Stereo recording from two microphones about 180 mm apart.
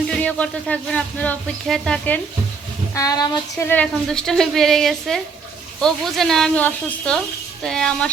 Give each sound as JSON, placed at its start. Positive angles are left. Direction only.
{"t": 0.1, "sound": "speech", "side_deg": 5}
{"t": 2.9, "sound": "speech", "side_deg": 20}
{"t": 3.7, "sound": "a woman's voice", "side_deg": 5}